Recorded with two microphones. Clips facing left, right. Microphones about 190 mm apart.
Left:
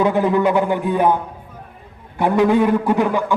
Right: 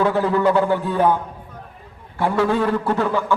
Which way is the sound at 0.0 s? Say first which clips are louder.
Left 2 dB; 15° left (ahead or behind).